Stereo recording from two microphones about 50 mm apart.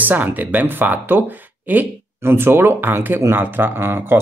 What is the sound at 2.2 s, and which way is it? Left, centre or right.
Speech, right.